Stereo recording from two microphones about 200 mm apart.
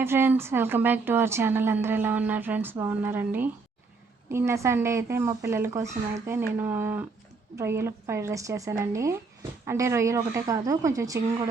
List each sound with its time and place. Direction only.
0.0 s a woman's voice: 10° right (ahead or behind)